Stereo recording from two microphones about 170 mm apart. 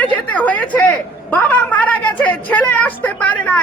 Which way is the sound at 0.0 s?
10° left (ahead or behind).